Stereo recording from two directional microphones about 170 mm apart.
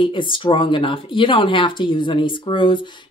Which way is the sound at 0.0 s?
30° left (ahead or behind).